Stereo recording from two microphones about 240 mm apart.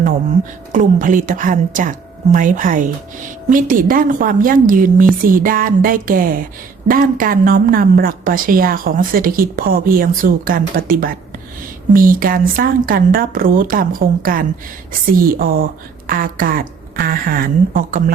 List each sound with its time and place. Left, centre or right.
0.7 s a woman's voice: right